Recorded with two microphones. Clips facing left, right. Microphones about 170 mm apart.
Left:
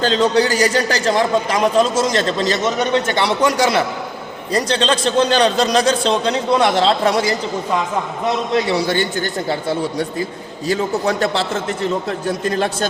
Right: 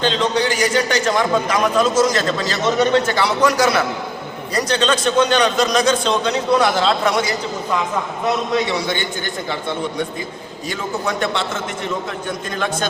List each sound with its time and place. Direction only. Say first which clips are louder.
0.0 s a man's voice: left 3 dB; 40° left (ahead or behind)
8.7 s a man's voice: left 4 dB; 35° left (ahead or behind)